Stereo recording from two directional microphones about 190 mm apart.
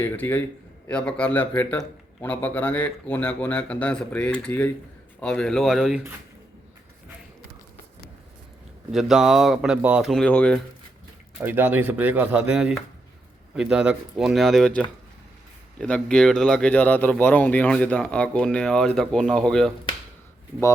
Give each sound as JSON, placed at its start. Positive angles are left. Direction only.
{"t": 0.0, "sound": "speech", "side_deg": 10}
{"t": 8.9, "sound": "speech", "side_deg": 0}
{"t": 11.3, "sound": "speech", "side_deg": -10}